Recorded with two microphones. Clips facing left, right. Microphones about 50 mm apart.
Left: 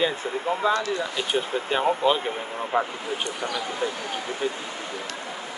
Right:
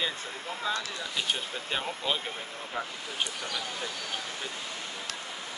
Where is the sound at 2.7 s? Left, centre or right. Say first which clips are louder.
Left 11 dB; left.